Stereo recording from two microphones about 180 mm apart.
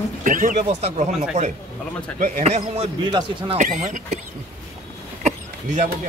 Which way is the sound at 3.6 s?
40° right (ahead or behind).